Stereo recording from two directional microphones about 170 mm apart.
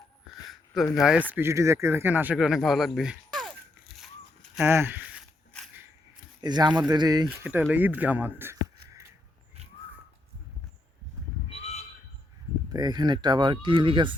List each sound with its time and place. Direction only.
0.4 s a sound: centre (ahead or behind)
0.9 s speech: 5° right (ahead or behind)
1.3 s speech: 15° right (ahead or behind); by 3.5 s centre (ahead or behind)
4.6 s speech: 15° right (ahead or behind)
6.4 s speech: 25° right (ahead or behind)
7.3 s speech: 10° right (ahead or behind)
8.9 s a sound: 15° right (ahead or behind)
11.4 s a sound: 35° left (ahead or behind)
12.7 s speech: 25° right (ahead or behind)